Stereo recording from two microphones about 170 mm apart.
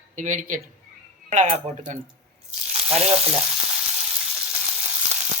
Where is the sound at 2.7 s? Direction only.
35° right (ahead or behind).